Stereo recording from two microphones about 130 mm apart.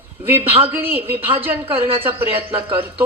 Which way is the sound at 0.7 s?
15° right (ahead or behind).